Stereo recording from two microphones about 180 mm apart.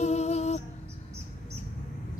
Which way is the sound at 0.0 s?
35° left (ahead or behind).